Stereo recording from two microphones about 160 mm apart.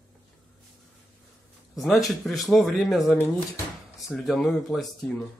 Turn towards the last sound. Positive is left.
turn(degrees=0)  # may be behind; listen again after turning